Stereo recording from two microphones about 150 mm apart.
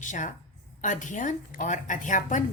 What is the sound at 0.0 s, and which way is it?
A woman's voice, 60° left (ahead or behind).